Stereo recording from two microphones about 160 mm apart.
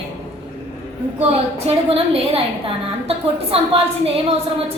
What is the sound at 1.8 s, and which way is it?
A woman's voice, 35° right (ahead or behind).